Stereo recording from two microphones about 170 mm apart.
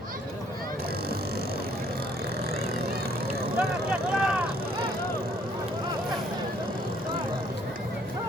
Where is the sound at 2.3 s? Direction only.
65° right (ahead or behind).